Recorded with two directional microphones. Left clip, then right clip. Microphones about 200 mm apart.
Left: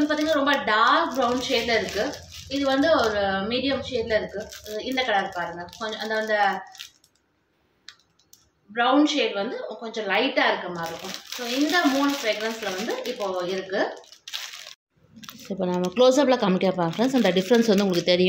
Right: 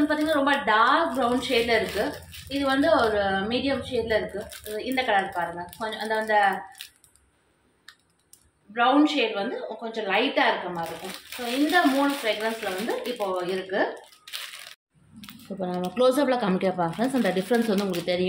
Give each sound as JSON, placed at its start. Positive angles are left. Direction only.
{"t": 0.1, "sound": "a woman's voice", "side_deg": 0}
{"t": 8.7, "sound": "a woman's voice", "side_deg": 5}
{"t": 15.5, "sound": "speech", "side_deg": 35}
{"t": 15.9, "sound": "speech", "side_deg": 20}